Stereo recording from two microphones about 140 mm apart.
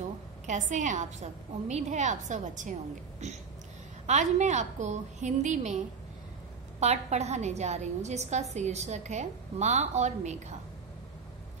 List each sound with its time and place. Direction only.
0.5 s a woman's voice: 60° right (ahead or behind)
6.8 s a woman's voice: 50° right (ahead or behind)